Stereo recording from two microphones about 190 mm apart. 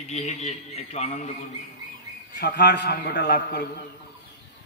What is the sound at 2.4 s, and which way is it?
A man's voice, 60° left (ahead or behind).